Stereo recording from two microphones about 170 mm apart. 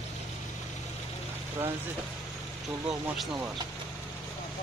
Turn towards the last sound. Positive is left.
turn(degrees=-5)  # may be behind; listen again after turning